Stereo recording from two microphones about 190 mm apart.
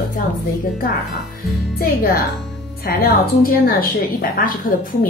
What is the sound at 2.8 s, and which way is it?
A woman's voice, 50° left (ahead or behind).